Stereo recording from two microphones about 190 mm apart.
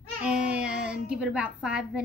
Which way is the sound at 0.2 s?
5° right (ahead or behind).